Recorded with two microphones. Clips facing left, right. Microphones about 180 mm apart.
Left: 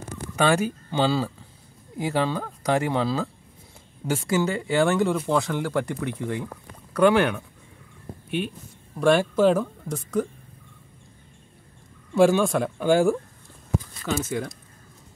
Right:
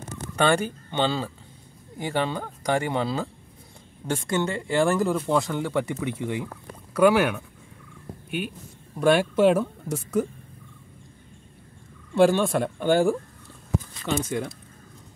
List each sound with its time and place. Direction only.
0.1 s speech: 10° left (ahead or behind)
8.9 s speech: 5° right (ahead or behind)
12.2 s speech: centre (ahead or behind)